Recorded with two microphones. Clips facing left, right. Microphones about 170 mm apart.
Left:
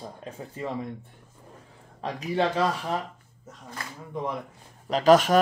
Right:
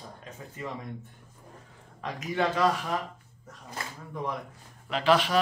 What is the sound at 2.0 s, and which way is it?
Speech, 35° left (ahead or behind).